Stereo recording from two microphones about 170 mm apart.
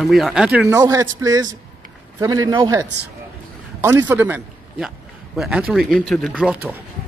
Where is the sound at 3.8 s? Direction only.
15° right (ahead or behind).